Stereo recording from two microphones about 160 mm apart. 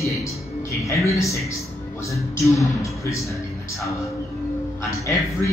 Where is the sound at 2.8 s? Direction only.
20° left (ahead or behind).